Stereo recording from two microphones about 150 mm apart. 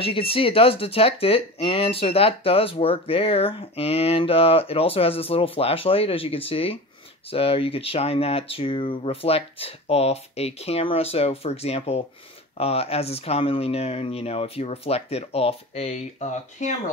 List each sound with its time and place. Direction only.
0.0 s speech: 40° left (ahead or behind)